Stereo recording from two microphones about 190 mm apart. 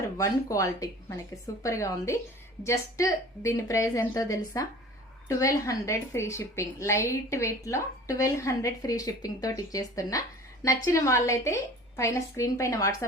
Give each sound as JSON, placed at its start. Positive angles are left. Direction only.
{"t": 0.2, "sound": "a woman's voice", "side_deg": 15}